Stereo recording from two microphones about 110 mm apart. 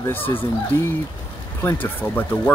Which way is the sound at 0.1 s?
20° left (ahead or behind).